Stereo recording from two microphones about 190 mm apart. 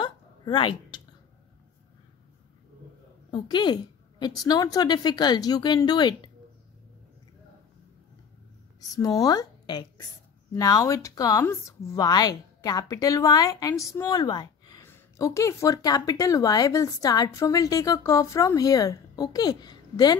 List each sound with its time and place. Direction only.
0.0 s a sound: 25° left (ahead or behind)
3.3 s a woman's voice: 25° left (ahead or behind)
8.9 s a woman's voice: 20° left (ahead or behind)